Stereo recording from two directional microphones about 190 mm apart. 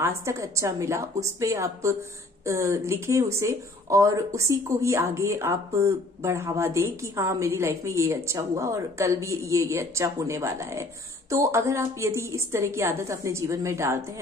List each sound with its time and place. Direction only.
0.0 s speech: 15° right (ahead or behind)